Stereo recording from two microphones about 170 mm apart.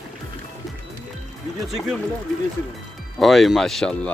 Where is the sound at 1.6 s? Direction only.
Centre (ahead or behind).